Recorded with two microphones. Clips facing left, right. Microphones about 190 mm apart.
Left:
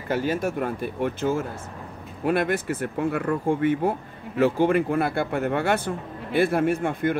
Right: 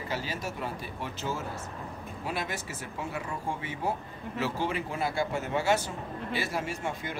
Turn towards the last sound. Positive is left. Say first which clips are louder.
# left 12 dB
turn(degrees=55)  # may be behind; listen again after turning